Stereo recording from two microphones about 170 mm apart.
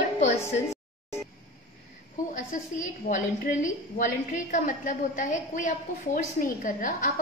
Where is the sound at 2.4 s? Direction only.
50° left (ahead or behind).